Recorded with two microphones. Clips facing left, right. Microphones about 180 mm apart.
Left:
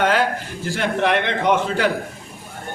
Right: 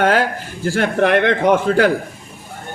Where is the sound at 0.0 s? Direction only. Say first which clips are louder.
Right 3 dB; 45° right (ahead or behind).